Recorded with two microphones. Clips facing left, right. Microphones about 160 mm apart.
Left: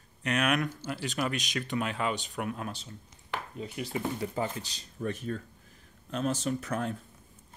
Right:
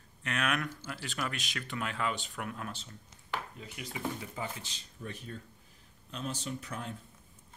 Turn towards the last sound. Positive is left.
turn(degrees=50)  # may be behind; listen again after turning